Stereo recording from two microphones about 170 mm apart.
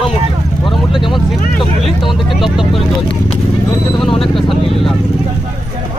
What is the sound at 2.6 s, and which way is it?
Speech, 30° left (ahead or behind).